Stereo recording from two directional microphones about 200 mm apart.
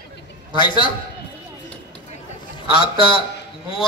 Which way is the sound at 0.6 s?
25° left (ahead or behind).